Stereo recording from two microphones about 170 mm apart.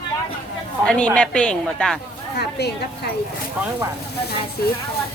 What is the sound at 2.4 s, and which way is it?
Speech, 75° left (ahead or behind).